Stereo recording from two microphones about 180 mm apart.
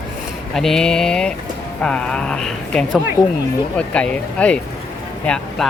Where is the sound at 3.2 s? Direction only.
25° left (ahead or behind).